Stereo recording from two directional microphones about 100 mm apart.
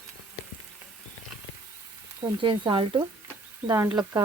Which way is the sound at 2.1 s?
55° right (ahead or behind).